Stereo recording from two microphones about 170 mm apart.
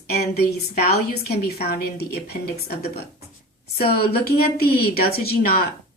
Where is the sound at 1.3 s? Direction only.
70° left (ahead or behind).